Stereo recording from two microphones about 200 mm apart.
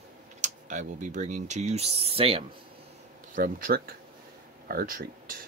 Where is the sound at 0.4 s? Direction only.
40° right (ahead or behind).